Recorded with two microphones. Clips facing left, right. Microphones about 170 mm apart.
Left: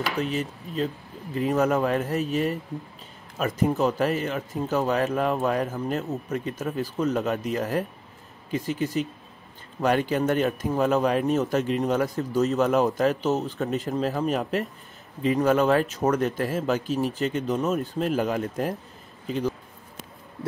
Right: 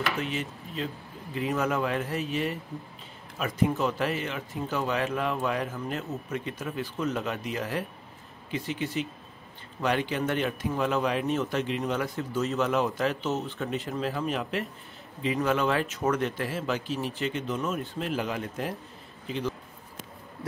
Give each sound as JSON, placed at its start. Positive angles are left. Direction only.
{"t": 0.2, "sound": "a man's voice", "side_deg": 40}